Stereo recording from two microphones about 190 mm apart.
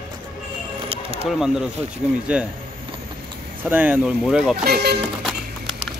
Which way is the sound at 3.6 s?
10° right (ahead or behind).